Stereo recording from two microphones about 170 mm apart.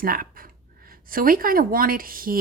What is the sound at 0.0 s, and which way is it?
A woman's voice, 60° right (ahead or behind).